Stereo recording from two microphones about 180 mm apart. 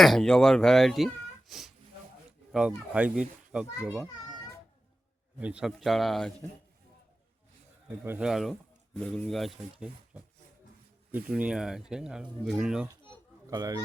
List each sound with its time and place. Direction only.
0.0 s a child's voice: centre (ahead or behind)
5.4 s a child's voice: 5° right (ahead or behind)
8.0 s speech: 10° right (ahead or behind)
8.3 s a child's voice: centre (ahead or behind)
11.1 s a child's voice: 5° right (ahead or behind)
13.5 s speech: 20° right (ahead or behind)